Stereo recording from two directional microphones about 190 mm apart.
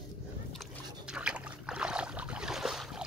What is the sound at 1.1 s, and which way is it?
Boat, 5° right (ahead or behind).